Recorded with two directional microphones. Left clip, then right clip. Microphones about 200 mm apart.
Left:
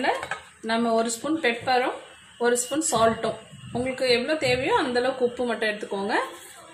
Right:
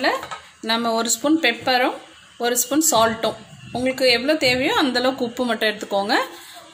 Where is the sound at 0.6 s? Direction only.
50° right (ahead or behind).